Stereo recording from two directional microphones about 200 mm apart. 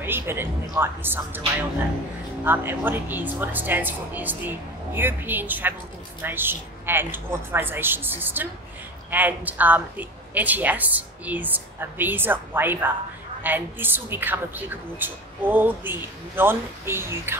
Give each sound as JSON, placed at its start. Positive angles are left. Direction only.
{"t": 0.0, "sound": "a woman's voice", "side_deg": -10}
{"t": 2.4, "sound": "a woman's voice", "side_deg": -10}